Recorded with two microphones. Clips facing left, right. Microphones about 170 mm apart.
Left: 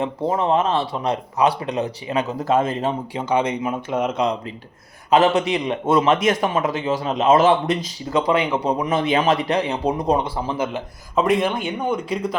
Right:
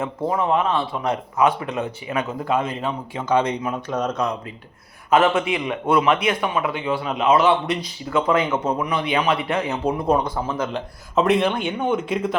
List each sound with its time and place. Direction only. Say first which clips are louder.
0.0 s speech: left 1 dB; 20° left (ahead or behind)
0.5 s speech: left 1 dB; 40° left (ahead or behind)
3.6 s speech: left 2 dB; 10° left (ahead or behind)
5.1 s speech: left 1 dB; 40° left (ahead or behind)
8.9 s speech: left 5 dB; 45° left (ahead or behind)
10.3 s speech: left 1 dB; 5° left (ahead or behind)